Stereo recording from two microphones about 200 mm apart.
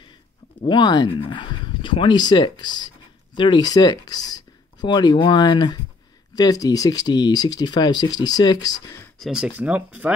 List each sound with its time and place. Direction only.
0.6 s speech: 20° left (ahead or behind)
9.2 s speech: 5° right (ahead or behind)